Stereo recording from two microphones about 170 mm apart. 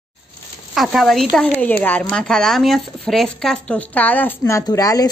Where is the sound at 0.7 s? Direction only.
Centre (ahead or behind).